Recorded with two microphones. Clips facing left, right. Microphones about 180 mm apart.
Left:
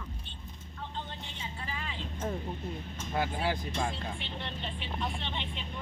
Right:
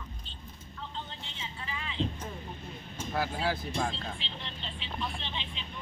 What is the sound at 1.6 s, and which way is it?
Vehicle, 40° left (ahead or behind).